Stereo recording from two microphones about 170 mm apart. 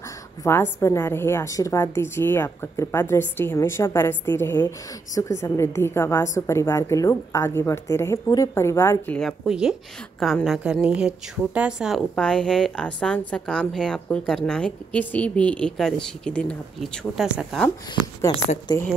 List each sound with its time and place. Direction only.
0.4 s a woman's voice: 15° left (ahead or behind)
9.5 s a woman's voice: 5° right (ahead or behind)
18.3 s speech: 20° left (ahead or behind)